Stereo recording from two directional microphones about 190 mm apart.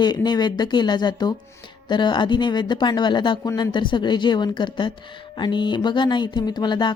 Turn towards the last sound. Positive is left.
turn(degrees=25)  # may be behind; listen again after turning